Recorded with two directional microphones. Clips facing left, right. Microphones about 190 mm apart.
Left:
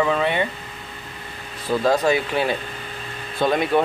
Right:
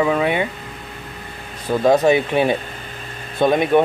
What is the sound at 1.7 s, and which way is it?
Speech, 20° right (ahead or behind).